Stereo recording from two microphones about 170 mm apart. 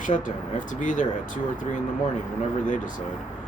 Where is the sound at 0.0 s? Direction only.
50° left (ahead or behind).